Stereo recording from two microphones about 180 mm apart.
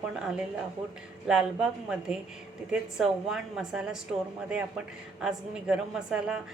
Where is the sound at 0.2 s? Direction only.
Centre (ahead or behind).